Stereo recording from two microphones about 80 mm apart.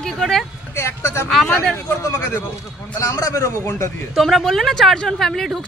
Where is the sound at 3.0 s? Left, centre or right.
Left.